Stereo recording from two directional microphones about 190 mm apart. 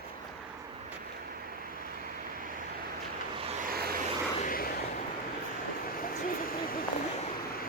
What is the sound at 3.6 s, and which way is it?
Vehicle, 50° right (ahead or behind).